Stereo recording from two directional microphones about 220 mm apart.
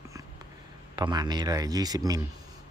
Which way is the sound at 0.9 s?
20° right (ahead or behind).